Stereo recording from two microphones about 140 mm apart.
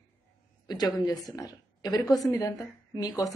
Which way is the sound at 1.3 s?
25° left (ahead or behind).